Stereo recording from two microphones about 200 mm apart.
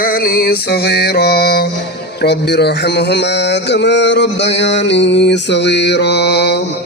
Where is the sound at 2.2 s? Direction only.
55° left (ahead or behind).